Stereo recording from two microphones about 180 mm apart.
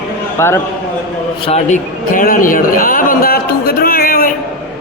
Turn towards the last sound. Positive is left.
turn(degrees=55)  # may be behind; listen again after turning